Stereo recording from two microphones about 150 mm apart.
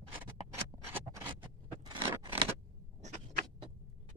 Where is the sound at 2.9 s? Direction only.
50° right (ahead or behind).